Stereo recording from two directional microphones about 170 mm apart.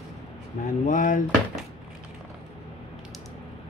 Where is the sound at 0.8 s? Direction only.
50° left (ahead or behind).